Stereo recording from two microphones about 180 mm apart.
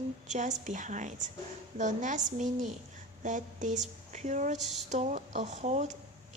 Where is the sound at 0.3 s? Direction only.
40° right (ahead or behind).